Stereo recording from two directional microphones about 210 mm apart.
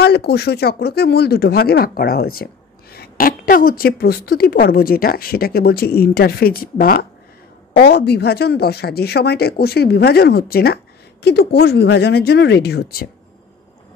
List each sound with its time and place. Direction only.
0.0 s speech: 50° left (ahead or behind)